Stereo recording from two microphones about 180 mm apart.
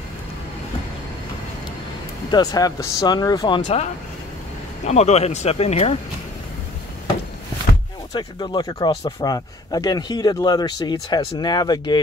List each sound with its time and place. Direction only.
2.3 s speech: 20° left (ahead or behind)
4.8 s speech: 40° left (ahead or behind)
8.1 s speech: 25° left (ahead or behind)